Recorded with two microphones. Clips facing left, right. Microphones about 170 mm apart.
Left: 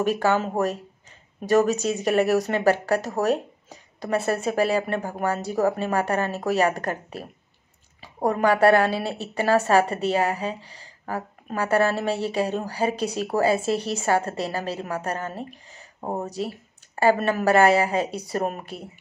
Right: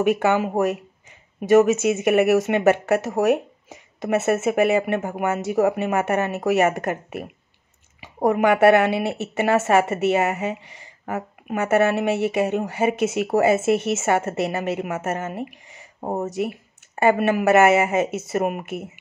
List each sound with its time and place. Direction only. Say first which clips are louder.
0.0 s speech: right 3 dB; 20° right (ahead or behind)